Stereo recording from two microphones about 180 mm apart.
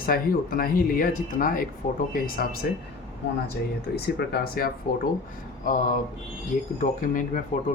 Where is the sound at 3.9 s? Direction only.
60° left (ahead or behind).